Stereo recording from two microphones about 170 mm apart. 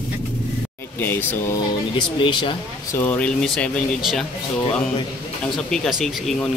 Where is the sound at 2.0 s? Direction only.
30° left (ahead or behind).